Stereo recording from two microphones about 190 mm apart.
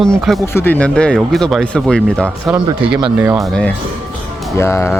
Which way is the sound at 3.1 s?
10° right (ahead or behind).